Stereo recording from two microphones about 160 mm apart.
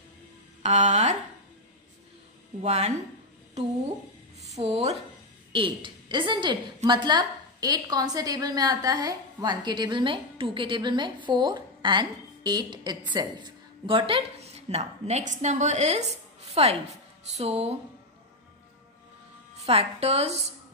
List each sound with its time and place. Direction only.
0.6 s speech: 45° right (ahead or behind)
2.6 s speech: 45° right (ahead or behind)
4.4 s a woman's voice: 45° right (ahead or behind)
19.6 s a woman's voice: 40° right (ahead or behind)